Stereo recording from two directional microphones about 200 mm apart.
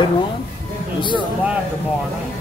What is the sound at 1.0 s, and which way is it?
Speech, 25° left (ahead or behind).